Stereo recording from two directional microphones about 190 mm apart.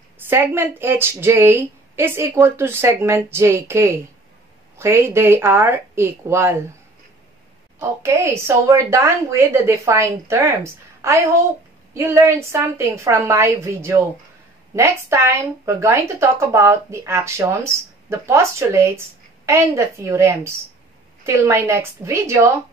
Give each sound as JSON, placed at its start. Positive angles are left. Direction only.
{"t": 0.3, "sound": "a woman's voice", "side_deg": -10}
{"t": 8.0, "sound": "a woman's voice", "side_deg": -15}